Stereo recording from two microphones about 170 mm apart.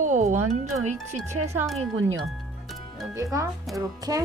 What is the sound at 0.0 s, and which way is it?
Music, 45° right (ahead or behind).